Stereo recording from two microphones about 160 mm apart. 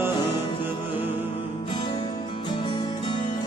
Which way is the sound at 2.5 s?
30° left (ahead or behind).